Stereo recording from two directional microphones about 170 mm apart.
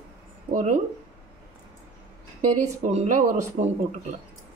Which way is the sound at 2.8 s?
45° right (ahead or behind).